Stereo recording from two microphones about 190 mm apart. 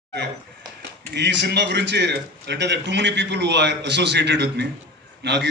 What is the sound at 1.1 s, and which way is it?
A man's voice, 65° right (ahead or behind).